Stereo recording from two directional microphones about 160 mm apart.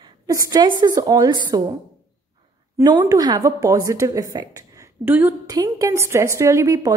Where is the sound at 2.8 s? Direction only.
25° right (ahead or behind).